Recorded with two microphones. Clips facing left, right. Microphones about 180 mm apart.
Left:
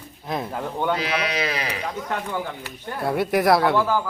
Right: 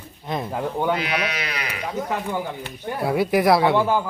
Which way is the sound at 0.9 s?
35° left (ahead or behind).